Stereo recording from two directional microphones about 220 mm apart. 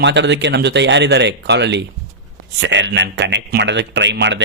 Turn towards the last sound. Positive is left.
turn(degrees=-55)  # may be behind; listen again after turning